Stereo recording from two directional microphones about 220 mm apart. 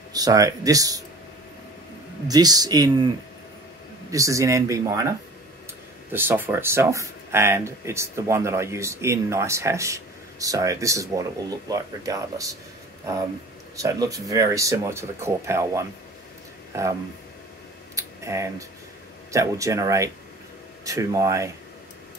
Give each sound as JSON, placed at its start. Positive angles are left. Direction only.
{"t": 0.1, "sound": "speech", "side_deg": -15}
{"t": 2.2, "sound": "speech", "side_deg": -15}
{"t": 4.1, "sound": "speech", "side_deg": -15}
{"t": 6.1, "sound": "speech", "side_deg": -10}
{"t": 13.7, "sound": "speech", "side_deg": -15}
{"t": 17.9, "sound": "a sound", "side_deg": -15}
{"t": 19.3, "sound": "speech", "side_deg": -15}